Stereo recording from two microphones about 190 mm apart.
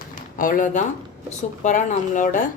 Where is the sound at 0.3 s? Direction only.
45° left (ahead or behind).